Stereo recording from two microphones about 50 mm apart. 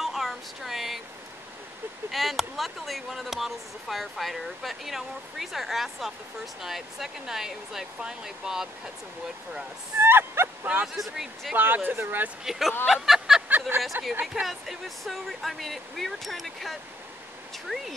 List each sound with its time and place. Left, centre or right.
0.0 s a sound: centre
2.0 s speech: centre
10.0 s dog: right
10.6 s speech: right
11.0 s speech: centre
11.5 s speech: right
12.4 s speech: centre
13.5 s speech: right
14.2 s speech: centre
14.5 s speech: centre